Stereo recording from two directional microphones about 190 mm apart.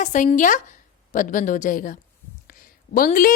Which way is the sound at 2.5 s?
45° left (ahead or behind).